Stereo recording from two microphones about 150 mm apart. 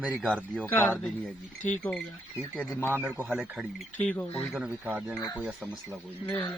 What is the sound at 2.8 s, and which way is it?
A man's voice, 15° right (ahead or behind).